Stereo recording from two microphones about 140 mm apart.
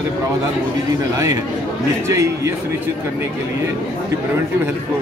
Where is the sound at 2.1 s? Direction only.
20° right (ahead or behind).